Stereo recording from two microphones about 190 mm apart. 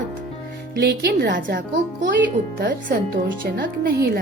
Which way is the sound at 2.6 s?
50° right (ahead or behind).